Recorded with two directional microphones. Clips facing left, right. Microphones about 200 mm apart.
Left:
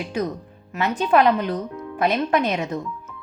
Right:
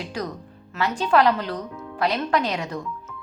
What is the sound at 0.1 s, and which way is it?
Speech, 20° left (ahead or behind).